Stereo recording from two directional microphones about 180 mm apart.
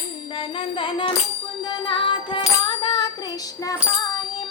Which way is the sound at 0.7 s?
30° left (ahead or behind).